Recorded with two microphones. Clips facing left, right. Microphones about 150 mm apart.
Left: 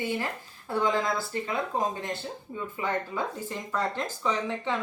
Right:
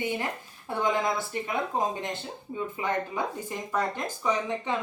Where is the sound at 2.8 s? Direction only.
15° right (ahead or behind).